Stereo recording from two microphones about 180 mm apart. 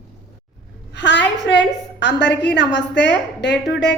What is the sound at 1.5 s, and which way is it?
A woman's voice, 75° left (ahead or behind).